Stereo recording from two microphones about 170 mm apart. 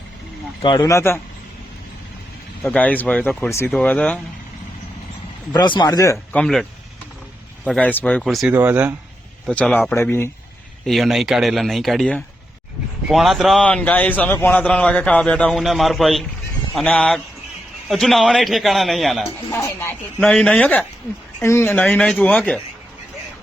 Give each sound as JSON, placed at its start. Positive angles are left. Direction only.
{"t": 0.6, "sound": "speech", "side_deg": 25}
{"t": 2.6, "sound": "speech", "side_deg": 10}
{"t": 5.5, "sound": "speech", "side_deg": 25}
{"t": 6.3, "sound": "a man's voice", "side_deg": 0}
{"t": 8.5, "sound": "speech", "side_deg": -10}
{"t": 9.5, "sound": "speech", "side_deg": 5}
{"t": 10.8, "sound": "a man's voice", "side_deg": 0}
{"t": 19.5, "sound": "speech", "side_deg": 15}